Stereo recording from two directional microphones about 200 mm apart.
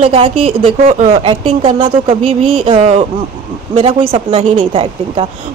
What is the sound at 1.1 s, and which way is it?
Speech, 25° right (ahead or behind).